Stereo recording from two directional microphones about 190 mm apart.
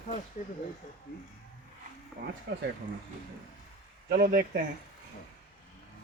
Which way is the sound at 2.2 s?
45° right (ahead or behind).